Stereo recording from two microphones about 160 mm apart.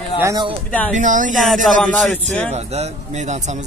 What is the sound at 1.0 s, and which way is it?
Speech, 50° right (ahead or behind).